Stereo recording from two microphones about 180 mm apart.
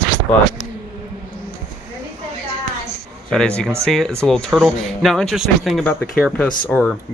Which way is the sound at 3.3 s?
5° left (ahead or behind).